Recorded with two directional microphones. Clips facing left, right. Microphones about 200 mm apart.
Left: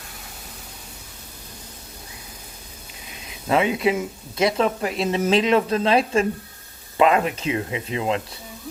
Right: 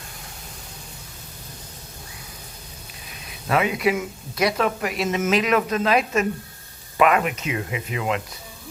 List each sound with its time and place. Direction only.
3.5 s speech: 25° left (ahead or behind)